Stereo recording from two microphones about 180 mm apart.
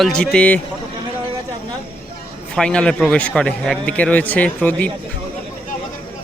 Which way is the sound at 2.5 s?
5° left (ahead or behind).